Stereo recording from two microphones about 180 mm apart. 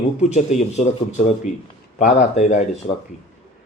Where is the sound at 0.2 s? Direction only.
40° left (ahead or behind).